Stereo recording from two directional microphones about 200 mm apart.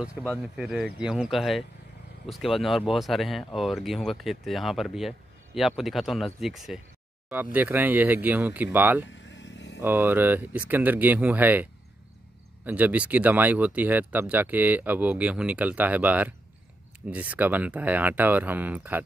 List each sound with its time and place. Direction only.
0.2 s speech: 5° right (ahead or behind)
9.1 s vehicle: 65° left (ahead or behind)
9.8 s speech: 10° right (ahead or behind)